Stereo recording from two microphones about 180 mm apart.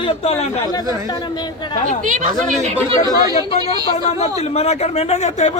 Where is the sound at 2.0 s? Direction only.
45° right (ahead or behind).